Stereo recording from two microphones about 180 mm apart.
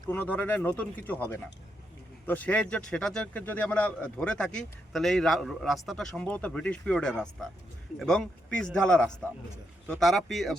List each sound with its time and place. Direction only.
0.1 s speech: 10° left (ahead or behind)
2.2 s a man's voice: 10° left (ahead or behind)